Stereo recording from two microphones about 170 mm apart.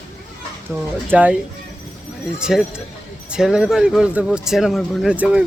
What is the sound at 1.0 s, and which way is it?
Speech, 10° right (ahead or behind).